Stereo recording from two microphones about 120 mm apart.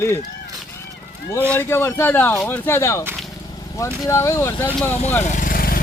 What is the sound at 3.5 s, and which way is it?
Vehicle, 25° left (ahead or behind).